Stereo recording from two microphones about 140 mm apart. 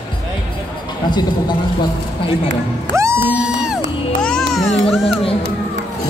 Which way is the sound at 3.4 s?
5° right (ahead or behind).